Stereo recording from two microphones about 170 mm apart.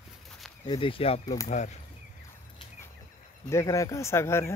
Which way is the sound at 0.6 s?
30° left (ahead or behind).